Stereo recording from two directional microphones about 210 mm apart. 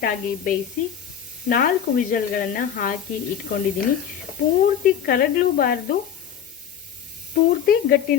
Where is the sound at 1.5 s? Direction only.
40° left (ahead or behind).